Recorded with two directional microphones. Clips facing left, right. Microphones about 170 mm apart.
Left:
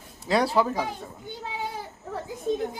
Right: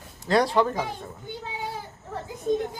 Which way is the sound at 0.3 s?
5° left (ahead or behind).